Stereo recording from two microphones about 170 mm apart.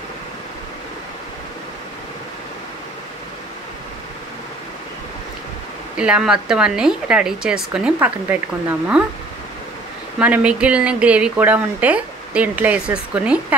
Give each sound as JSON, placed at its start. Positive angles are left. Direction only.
{"t": 5.9, "sound": "speech", "side_deg": -5}
{"t": 10.1, "sound": "speech", "side_deg": -5}